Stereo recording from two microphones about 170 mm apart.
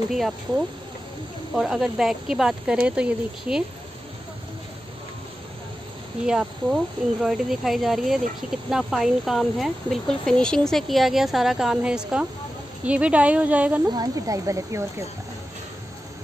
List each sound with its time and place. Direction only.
0.1 s speech: centre (ahead or behind)
6.2 s speech: 5° right (ahead or behind)
13.8 s speech: 25° right (ahead or behind)